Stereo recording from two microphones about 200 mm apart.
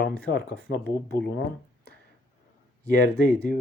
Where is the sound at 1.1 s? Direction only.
60° left (ahead or behind).